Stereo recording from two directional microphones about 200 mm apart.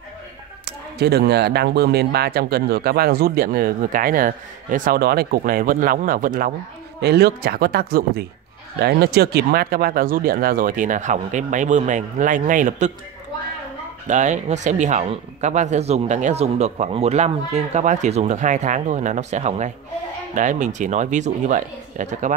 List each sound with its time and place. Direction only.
0.7 s speech: 55° right (ahead or behind)
7.0 s speech: 55° right (ahead or behind); by 12.9 s 40° right (ahead or behind)
14.0 s speech: 35° right (ahead or behind)